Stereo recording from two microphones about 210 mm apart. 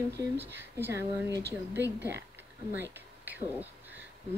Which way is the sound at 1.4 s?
50° right (ahead or behind).